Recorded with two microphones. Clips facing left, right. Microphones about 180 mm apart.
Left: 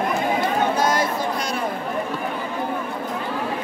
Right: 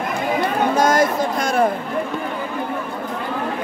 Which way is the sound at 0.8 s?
45° right (ahead or behind).